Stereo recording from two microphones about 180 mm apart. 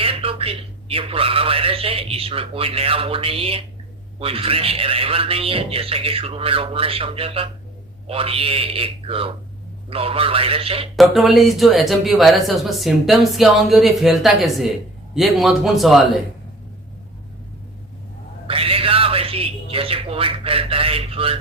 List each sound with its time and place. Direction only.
0.0 s a man's voice: 30° right (ahead or behind)
10.9 s speech: centre (ahead or behind)
18.4 s a sound: 30° right (ahead or behind)